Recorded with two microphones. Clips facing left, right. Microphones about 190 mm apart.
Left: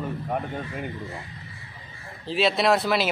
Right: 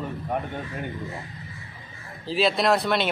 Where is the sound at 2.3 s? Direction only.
Centre (ahead or behind).